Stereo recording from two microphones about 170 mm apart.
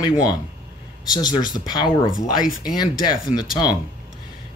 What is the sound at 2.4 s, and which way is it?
Speech, 5° right (ahead or behind).